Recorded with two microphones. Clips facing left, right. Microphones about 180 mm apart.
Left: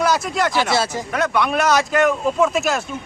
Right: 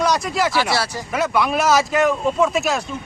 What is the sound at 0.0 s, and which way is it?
Speech, 5° left (ahead or behind).